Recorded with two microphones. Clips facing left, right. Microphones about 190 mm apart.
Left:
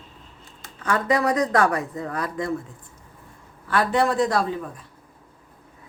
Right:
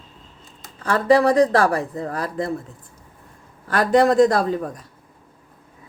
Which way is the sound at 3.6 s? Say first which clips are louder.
Right 5 dB; 40° right (ahead or behind).